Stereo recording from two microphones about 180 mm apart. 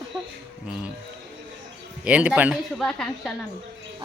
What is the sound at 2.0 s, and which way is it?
Speech, 5° right (ahead or behind).